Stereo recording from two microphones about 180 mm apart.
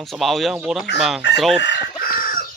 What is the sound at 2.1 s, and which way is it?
Chicken, 50° left (ahead or behind).